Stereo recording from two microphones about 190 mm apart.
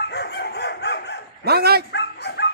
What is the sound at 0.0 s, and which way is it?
Chicken, 60° left (ahead or behind).